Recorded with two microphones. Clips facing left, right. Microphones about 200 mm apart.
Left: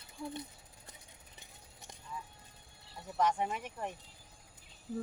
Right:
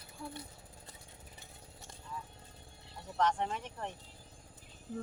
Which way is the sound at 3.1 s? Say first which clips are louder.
Even; 10° left (ahead or behind).